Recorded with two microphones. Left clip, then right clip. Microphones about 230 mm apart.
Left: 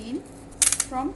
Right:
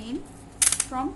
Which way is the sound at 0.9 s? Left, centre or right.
Centre.